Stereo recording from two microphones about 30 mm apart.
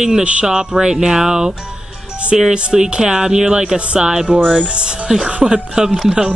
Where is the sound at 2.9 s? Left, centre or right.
Right.